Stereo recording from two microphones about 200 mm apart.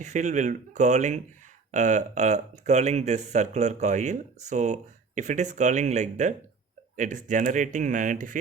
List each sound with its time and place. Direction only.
0.0 s speech: 35° right (ahead or behind)